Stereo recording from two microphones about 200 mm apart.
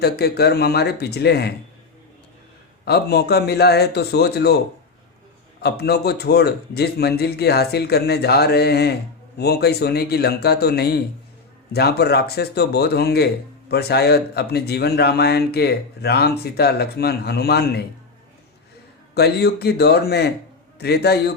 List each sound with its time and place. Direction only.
0.0 s speech: 55° left (ahead or behind)
2.8 s speech: 55° left (ahead or behind)
5.6 s speech: 55° left (ahead or behind)
19.1 s a man's voice: 55° left (ahead or behind)